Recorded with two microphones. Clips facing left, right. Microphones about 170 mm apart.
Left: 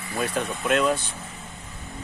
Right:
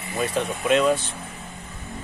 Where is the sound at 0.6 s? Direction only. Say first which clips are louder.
Right 3 dB; 5° right (ahead or behind).